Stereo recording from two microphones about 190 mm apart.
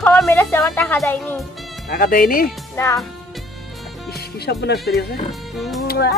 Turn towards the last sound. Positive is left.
turn(degrees=0)  # may be behind; listen again after turning